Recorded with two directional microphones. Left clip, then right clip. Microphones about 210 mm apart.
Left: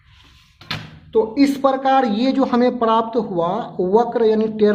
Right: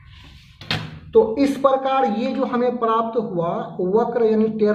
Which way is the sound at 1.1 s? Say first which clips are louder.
Right 1 dB; 30° left (ahead or behind).